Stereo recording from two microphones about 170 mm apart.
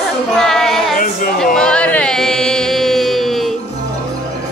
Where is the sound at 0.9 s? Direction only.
55° left (ahead or behind).